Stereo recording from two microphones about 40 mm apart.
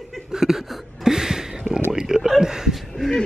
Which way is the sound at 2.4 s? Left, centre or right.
Centre.